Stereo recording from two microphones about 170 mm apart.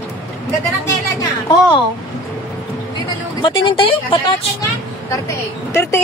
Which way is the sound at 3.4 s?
30° left (ahead or behind).